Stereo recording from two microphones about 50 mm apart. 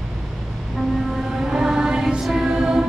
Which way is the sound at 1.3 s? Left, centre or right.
Centre.